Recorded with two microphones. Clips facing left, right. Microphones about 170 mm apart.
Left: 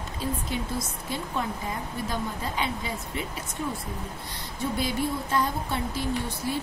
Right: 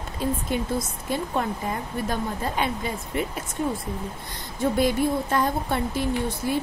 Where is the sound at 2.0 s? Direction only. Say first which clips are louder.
Right 4 dB; 55° right (ahead or behind).